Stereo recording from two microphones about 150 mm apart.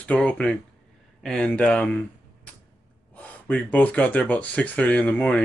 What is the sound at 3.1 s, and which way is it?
Speech, 10° left (ahead or behind).